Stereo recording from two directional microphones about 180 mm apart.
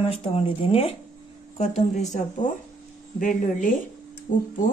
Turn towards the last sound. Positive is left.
turn(degrees=45)  # may be behind; listen again after turning